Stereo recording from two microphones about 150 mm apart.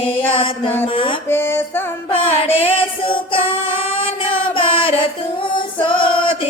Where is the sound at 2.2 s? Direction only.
40° left (ahead or behind).